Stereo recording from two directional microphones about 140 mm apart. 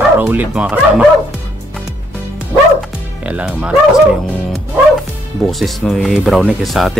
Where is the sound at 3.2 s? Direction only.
10° right (ahead or behind).